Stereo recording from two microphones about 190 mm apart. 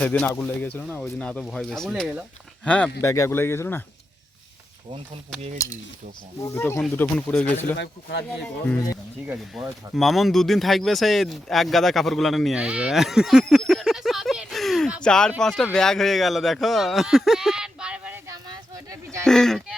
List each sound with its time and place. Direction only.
0.0 s speech: 10° left (ahead or behind)
2.6 s speech: 5° left (ahead or behind)
4.9 s speech: 30° right (ahead or behind)
6.4 s speech: 15° left (ahead or behind)
9.2 s speech: 10° right (ahead or behind)
18.5 s a sound: 15° right (ahead or behind)
19.2 s speech: 5° left (ahead or behind)